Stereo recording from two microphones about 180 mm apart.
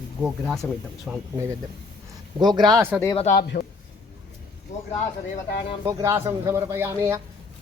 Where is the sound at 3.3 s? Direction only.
65° left (ahead or behind).